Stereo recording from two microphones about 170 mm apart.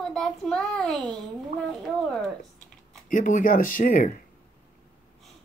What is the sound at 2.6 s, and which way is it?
Speech, 50° left (ahead or behind).